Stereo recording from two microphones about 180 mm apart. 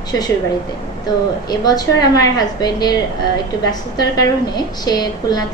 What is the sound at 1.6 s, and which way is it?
A woman's voice, 20° left (ahead or behind).